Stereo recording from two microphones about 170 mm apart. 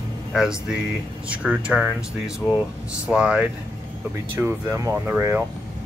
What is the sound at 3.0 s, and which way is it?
Speech, 5° right (ahead or behind).